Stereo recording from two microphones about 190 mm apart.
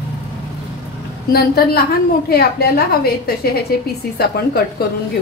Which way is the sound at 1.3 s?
55° left (ahead or behind).